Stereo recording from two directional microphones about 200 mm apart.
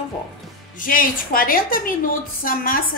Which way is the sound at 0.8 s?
45° left (ahead or behind).